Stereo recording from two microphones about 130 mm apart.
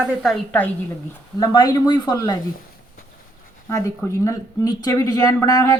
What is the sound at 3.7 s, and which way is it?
Speech, 25° left (ahead or behind).